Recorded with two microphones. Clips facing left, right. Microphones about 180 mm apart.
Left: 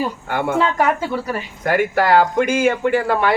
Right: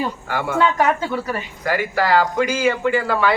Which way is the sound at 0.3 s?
55° left (ahead or behind).